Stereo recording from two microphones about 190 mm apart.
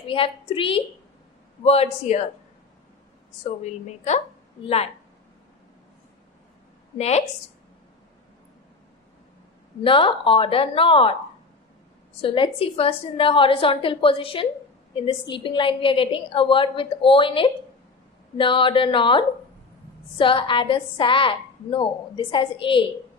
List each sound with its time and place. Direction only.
0.1 s a woman's voice: 30° left (ahead or behind)
7.0 s a man's voice: 35° left (ahead or behind)
9.8 s a woman's voice: 25° left (ahead or behind)
12.2 s a woman's voice: 30° left (ahead or behind)